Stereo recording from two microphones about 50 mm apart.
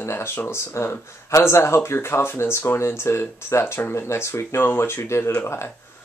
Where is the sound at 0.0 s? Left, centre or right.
Left.